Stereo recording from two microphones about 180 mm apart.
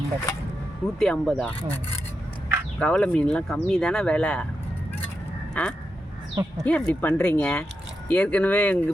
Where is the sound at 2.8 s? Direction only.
5° left (ahead or behind).